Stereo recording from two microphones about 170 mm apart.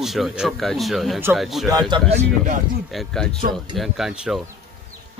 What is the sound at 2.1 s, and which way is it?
Speech, 50° right (ahead or behind).